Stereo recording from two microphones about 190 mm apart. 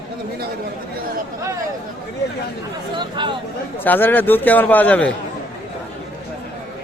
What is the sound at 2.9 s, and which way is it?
Speech, 25° right (ahead or behind).